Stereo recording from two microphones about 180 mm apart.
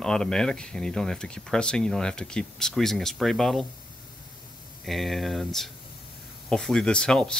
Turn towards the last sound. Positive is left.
turn(degrees=5)  # may be behind; listen again after turning